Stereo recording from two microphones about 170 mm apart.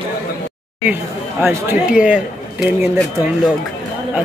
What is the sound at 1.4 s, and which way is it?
A man's voice, 15° right (ahead or behind).